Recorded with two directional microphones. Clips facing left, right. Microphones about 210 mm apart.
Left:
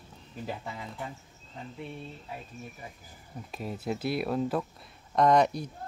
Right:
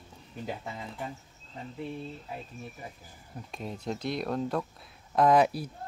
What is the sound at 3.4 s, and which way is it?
Speech, 5° left (ahead or behind).